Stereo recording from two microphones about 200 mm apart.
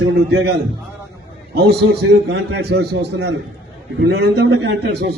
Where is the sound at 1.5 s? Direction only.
55° right (ahead or behind).